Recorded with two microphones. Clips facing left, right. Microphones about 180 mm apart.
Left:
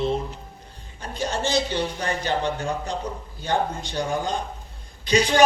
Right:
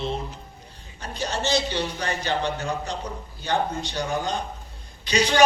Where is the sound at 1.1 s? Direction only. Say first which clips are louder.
Left 1 dB; 50° left (ahead or behind).